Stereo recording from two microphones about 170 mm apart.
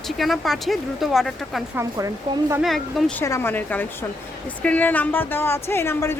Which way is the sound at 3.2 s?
15° left (ahead or behind).